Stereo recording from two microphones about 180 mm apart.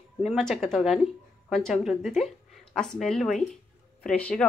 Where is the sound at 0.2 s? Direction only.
Centre (ahead or behind).